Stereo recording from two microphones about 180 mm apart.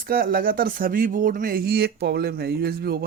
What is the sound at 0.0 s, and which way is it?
Speech, 50° right (ahead or behind).